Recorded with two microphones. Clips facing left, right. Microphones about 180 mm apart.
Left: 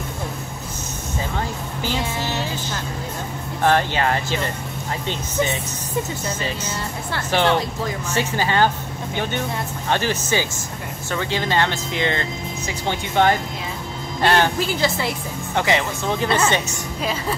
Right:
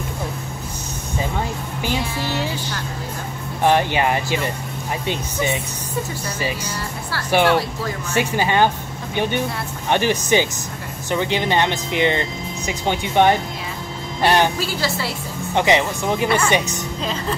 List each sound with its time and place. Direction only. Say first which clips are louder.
3.6 s speech: right 2 dB; 15° right (ahead or behind)
7.2 s speech: right 3 dB; 10° right (ahead or behind)
14.6 s a woman's voice: left 2 dB; 20° left (ahead or behind)
15.5 s speech: right 3 dB; 20° right (ahead or behind)